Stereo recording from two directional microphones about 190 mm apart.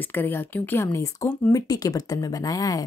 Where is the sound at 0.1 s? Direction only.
10° left (ahead or behind).